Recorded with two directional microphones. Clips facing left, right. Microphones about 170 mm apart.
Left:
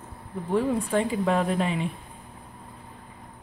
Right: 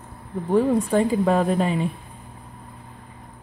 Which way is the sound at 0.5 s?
40° right (ahead or behind).